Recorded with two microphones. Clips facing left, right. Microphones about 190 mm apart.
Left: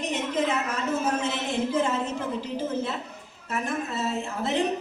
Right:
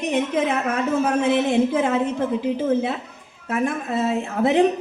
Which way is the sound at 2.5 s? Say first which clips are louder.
Right 7 dB; 60° right (ahead or behind).